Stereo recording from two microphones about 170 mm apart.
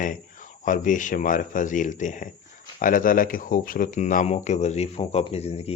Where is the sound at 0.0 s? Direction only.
50° left (ahead or behind).